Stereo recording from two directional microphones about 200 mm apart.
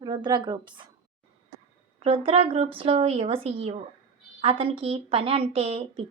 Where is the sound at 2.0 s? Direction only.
30° right (ahead or behind).